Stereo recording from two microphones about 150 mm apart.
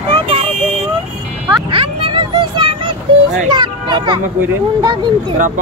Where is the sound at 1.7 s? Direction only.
40° right (ahead or behind).